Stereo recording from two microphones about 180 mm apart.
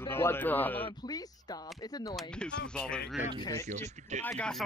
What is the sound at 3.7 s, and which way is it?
Speech, 40° right (ahead or behind).